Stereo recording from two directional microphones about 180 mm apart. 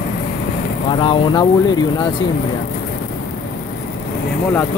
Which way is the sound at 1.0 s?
30° left (ahead or behind).